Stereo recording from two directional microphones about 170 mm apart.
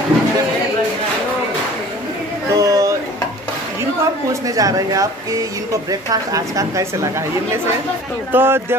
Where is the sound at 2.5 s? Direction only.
20° right (ahead or behind).